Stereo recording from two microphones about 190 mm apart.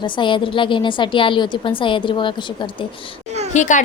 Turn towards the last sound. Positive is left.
turn(degrees=40)  # may be behind; listen again after turning